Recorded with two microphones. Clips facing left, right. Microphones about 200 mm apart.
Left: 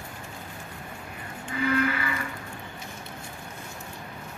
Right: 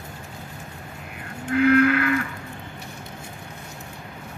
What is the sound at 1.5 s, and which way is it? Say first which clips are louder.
Livestock: right 9 dB; 70° right (ahead or behind).